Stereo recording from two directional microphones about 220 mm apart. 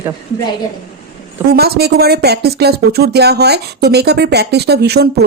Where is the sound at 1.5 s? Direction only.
45° right (ahead or behind).